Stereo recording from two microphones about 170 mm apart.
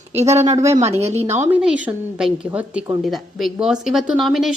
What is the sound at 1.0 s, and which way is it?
Speech, 40° right (ahead or behind).